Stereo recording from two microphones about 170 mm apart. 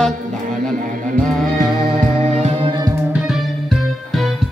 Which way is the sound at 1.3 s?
Centre (ahead or behind).